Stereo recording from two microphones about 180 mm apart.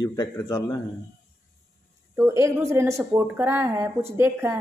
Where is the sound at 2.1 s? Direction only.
15° right (ahead or behind).